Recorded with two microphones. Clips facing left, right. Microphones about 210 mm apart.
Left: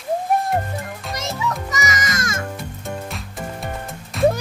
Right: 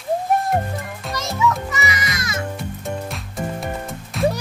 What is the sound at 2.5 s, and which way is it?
Music, centre (ahead or behind).